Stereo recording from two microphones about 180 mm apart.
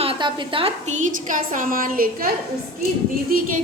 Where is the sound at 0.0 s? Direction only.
30° right (ahead or behind).